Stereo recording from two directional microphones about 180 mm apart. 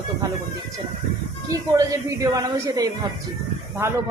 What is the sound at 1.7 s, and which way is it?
A woman's voice, 20° right (ahead or behind).